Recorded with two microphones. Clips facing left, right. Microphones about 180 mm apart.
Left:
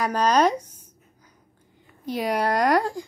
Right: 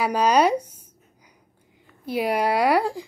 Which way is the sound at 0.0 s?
10° right (ahead or behind).